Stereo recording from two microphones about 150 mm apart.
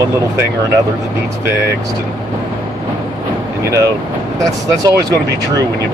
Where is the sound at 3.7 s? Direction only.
20° right (ahead or behind).